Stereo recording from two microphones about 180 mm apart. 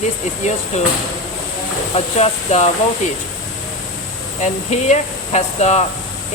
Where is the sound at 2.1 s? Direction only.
35° left (ahead or behind).